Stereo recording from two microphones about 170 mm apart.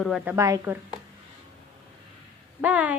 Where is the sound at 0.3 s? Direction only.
20° right (ahead or behind).